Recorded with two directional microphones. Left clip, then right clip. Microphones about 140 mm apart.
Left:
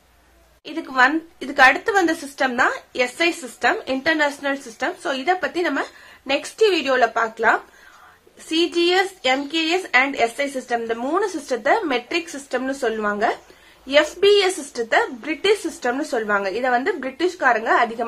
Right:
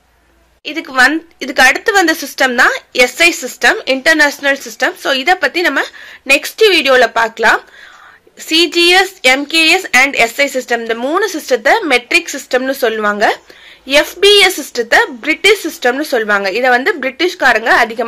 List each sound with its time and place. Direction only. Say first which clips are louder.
0.7 s a woman's voice: right 7 dB; 15° right (ahead or behind)